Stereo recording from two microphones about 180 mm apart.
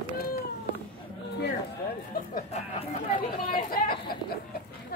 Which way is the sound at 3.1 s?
55° left (ahead or behind).